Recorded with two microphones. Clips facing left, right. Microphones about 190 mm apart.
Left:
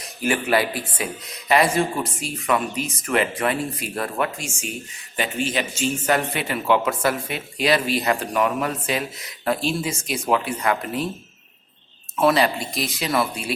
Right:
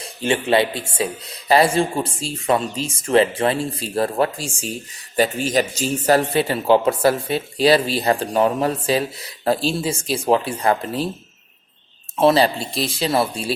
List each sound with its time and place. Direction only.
0.0 s speech: 25° right (ahead or behind)
12.1 s speech: 30° right (ahead or behind)